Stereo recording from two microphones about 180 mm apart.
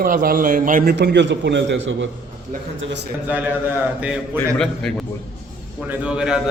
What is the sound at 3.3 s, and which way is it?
Speech, 10° right (ahead or behind).